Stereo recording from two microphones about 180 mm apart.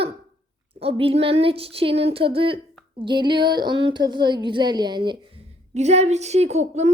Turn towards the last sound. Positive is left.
turn(degrees=-40)  # may be behind; listen again after turning